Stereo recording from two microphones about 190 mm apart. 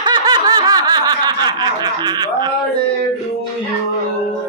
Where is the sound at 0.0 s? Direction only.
20° right (ahead or behind).